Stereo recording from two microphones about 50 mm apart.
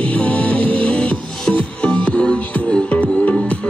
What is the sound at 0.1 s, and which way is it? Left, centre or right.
Music, left.